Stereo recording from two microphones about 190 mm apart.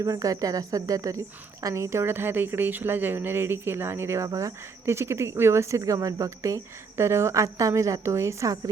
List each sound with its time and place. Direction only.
0.0 s speech: 15° right (ahead or behind)